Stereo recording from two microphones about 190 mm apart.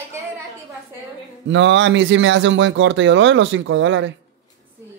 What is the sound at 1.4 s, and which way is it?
Speech, 75° right (ahead or behind).